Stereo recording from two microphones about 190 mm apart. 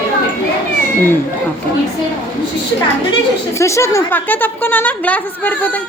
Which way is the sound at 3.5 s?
15° left (ahead or behind).